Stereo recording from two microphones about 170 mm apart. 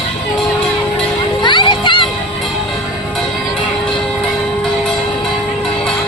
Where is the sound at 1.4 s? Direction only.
25° left (ahead or behind).